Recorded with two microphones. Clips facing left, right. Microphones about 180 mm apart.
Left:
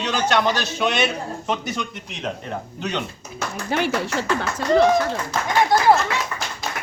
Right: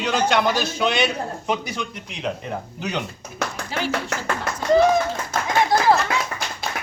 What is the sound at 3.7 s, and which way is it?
Speech, 60° left (ahead or behind).